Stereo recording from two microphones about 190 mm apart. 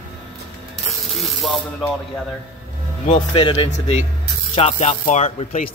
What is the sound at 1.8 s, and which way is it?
Speech, centre (ahead or behind).